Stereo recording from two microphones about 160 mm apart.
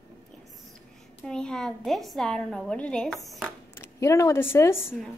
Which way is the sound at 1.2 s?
5° left (ahead or behind).